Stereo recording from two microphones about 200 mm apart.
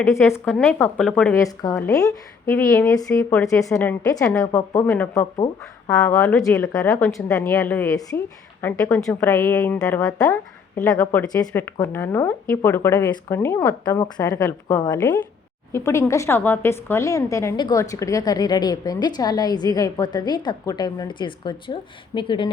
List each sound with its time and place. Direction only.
0.0 s a woman's voice: 10° left (ahead or behind)